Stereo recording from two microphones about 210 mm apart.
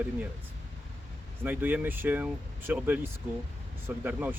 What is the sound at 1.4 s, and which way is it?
Speech, 10° right (ahead or behind).